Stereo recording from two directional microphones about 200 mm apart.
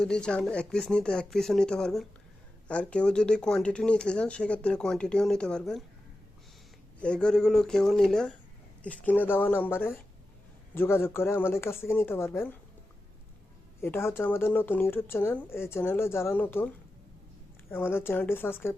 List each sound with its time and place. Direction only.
0.0 s speech: 5° left (ahead or behind)
7.0 s speech: 5° left (ahead or behind)
13.8 s speech: 10° left (ahead or behind)
17.7 s speech: 10° left (ahead or behind)